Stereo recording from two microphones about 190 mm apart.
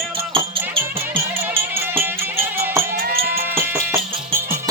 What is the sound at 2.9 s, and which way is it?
Music, 50° right (ahead or behind).